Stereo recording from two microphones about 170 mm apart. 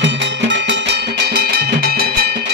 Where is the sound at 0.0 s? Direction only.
90° right.